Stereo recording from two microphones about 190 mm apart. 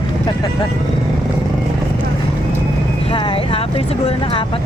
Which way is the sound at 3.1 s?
30° left (ahead or behind).